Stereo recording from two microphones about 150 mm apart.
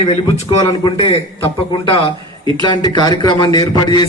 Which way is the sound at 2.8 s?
25° left (ahead or behind).